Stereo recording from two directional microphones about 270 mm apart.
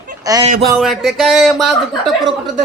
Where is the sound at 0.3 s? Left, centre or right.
Centre.